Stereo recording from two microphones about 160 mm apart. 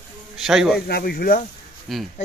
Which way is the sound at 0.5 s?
5° right (ahead or behind).